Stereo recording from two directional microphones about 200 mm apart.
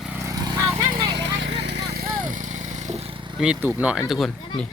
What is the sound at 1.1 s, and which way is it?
Vehicle, 60° right (ahead or behind).